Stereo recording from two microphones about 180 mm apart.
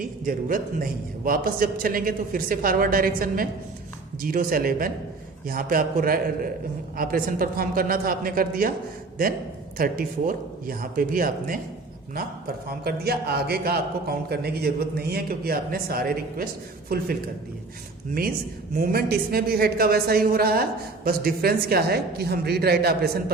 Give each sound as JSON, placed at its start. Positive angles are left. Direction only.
{"t": 0.0, "sound": "a man's voice", "side_deg": -50}
{"t": 9.7, "sound": "a man's voice", "side_deg": -50}
{"t": 12.8, "sound": "a woman's voice", "side_deg": -60}
{"t": 18.8, "sound": "a woman's voice", "side_deg": -55}